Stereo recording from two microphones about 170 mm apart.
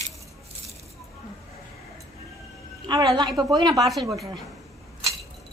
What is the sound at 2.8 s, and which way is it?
Speech, 25° right (ahead or behind).